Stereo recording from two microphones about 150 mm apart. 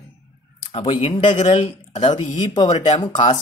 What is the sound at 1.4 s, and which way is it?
Speech, 50° left (ahead or behind).